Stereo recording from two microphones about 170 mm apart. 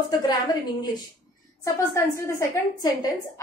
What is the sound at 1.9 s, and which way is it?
A woman's voice, 15° left (ahead or behind).